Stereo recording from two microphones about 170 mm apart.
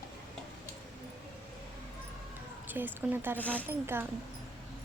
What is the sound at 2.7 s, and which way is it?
Speech, 10° right (ahead or behind).